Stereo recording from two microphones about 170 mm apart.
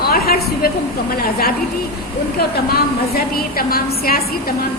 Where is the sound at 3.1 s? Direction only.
60° left (ahead or behind).